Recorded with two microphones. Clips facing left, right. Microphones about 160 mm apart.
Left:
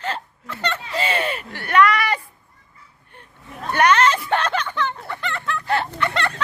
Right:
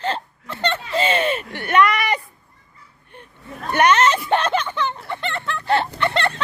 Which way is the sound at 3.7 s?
20° right (ahead or behind).